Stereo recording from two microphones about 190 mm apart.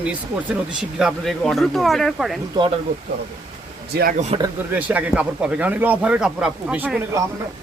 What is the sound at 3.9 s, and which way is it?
Speech, 55° right (ahead or behind).